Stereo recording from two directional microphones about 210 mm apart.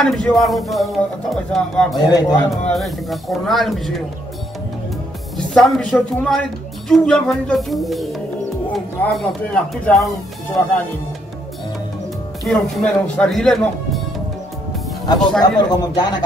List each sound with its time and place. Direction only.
0.0 s speech: centre (ahead or behind)
2.0 s speech: 20° left (ahead or behind)
2.5 s speech: centre (ahead or behind)
5.5 s speech: 5° left (ahead or behind)
12.4 s speech: 5° left (ahead or behind)
15.4 s speech: 20° left (ahead or behind)